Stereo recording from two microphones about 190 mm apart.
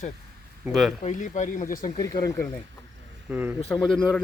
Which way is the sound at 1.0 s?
40° left (ahead or behind).